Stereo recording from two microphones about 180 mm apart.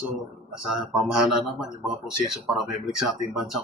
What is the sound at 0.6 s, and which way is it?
Speech, 5° right (ahead or behind).